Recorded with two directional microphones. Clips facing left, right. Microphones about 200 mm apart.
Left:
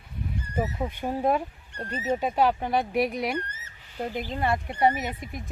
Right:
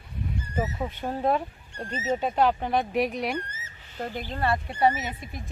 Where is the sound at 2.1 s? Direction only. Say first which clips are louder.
Even; 10° left (ahead or behind).